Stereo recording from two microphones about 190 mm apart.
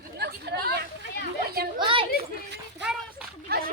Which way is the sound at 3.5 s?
55° right (ahead or behind).